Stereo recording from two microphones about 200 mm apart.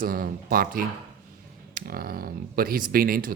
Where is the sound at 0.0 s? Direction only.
45° right (ahead or behind).